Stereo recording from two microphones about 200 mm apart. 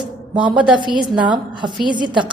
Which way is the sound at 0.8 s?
25° right (ahead or behind).